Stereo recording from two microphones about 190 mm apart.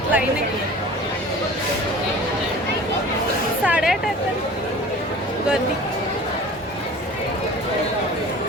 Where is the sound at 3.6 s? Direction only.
5° right (ahead or behind).